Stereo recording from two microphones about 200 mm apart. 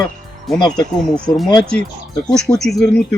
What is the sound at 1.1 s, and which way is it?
Speech, centre (ahead or behind).